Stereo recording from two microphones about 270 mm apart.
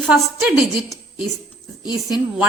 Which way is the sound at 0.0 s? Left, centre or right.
Centre.